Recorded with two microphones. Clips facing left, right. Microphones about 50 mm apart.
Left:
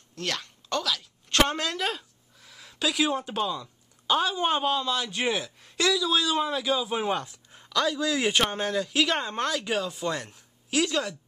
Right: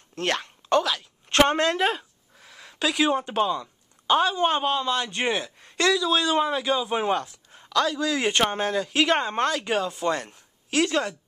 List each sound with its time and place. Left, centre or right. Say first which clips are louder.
0.1 s a woman's voice: right 6 dB; right
3.6 s a sound: right 3 dB; centre
4.6 s speech: right 2 dB; centre
6.2 s a man's voice: right 3 dB; right
7.6 s speech: right 2 dB; centre
8.5 s a man's voice: right 3 dB; centre
9.8 s speech: right 4 dB; centre
10.9 s a man's voice: right 3 dB; centre